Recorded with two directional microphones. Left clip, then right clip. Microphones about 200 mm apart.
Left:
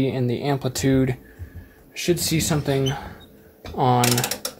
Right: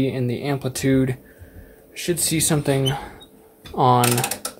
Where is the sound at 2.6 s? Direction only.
30° right (ahead or behind).